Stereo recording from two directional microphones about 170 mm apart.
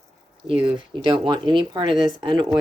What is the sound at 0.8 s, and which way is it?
Speech, 30° right (ahead or behind).